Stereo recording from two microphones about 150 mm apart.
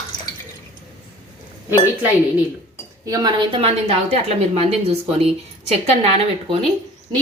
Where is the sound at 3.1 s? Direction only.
30° right (ahead or behind).